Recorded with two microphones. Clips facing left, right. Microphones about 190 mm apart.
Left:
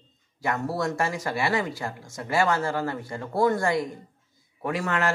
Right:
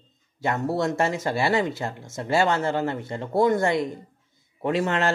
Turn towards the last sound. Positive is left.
turn(degrees=-25)  # may be behind; listen again after turning